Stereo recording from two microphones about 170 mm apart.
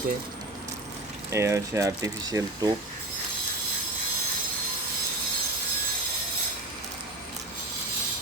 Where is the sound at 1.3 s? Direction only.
15° right (ahead or behind).